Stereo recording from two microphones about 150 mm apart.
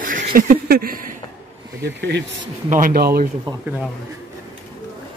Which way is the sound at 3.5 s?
30° right (ahead or behind).